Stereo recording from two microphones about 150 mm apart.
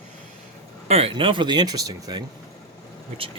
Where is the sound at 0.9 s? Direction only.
40° right (ahead or behind).